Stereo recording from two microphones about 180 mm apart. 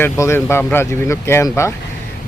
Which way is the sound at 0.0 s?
15° left (ahead or behind).